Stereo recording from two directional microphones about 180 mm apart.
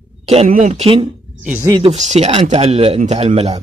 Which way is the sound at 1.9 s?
40° right (ahead or behind).